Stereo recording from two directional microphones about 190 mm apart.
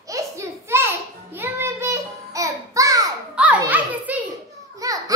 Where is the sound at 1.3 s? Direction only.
15° right (ahead or behind).